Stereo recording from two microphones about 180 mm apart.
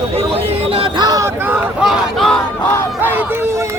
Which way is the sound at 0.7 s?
25° right (ahead or behind).